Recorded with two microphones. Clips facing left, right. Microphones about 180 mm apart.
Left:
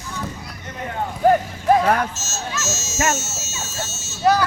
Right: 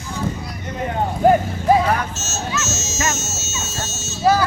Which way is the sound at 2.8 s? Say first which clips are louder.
Left 2 dB; 70° right (ahead or behind).